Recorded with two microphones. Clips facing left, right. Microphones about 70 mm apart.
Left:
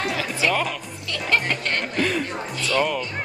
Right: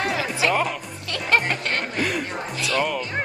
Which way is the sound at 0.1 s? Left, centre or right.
Centre.